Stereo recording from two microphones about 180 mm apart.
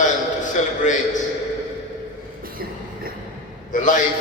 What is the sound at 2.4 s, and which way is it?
Train, 55° right (ahead or behind).